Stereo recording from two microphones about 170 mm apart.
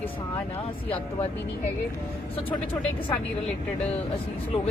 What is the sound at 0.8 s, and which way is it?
Speech, 35° left (ahead or behind).